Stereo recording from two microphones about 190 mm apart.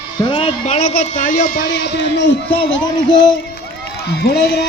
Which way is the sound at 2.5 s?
25° left (ahead or behind).